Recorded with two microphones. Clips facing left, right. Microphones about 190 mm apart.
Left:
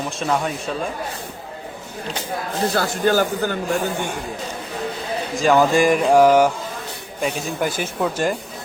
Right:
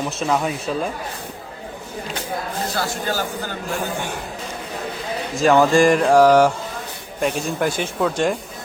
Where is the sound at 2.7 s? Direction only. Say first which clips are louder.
Left 7 dB; 60° left (ahead or behind).